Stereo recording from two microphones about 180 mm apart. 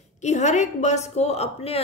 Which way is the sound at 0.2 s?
40° left (ahead or behind).